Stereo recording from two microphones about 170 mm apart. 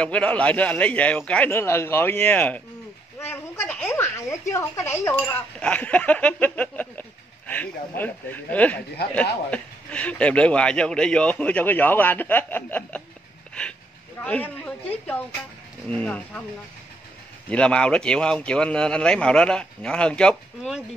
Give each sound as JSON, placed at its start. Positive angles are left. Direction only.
{"t": 0.0, "sound": "a woman's voice", "side_deg": 5}
{"t": 14.2, "sound": "speech", "side_deg": 10}
{"t": 15.9, "sound": "speech", "side_deg": 10}
{"t": 17.5, "sound": "speech", "side_deg": 5}